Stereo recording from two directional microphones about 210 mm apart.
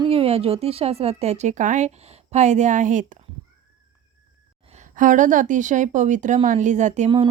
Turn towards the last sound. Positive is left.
turn(degrees=-35)  # may be behind; listen again after turning